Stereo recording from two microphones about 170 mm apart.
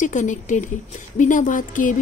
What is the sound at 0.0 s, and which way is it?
A woman's voice, 45° left (ahead or behind).